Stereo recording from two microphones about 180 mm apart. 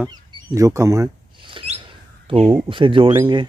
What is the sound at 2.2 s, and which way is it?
Speech, 35° right (ahead or behind).